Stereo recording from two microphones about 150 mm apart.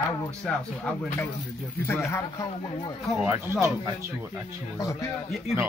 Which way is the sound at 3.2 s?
15° right (ahead or behind).